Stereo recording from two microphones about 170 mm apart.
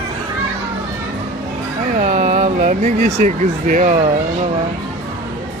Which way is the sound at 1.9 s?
45° right (ahead or behind).